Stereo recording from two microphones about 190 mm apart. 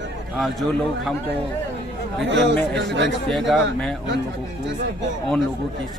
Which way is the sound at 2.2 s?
65° right (ahead or behind).